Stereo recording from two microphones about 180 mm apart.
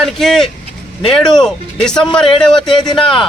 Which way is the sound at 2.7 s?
25° left (ahead or behind).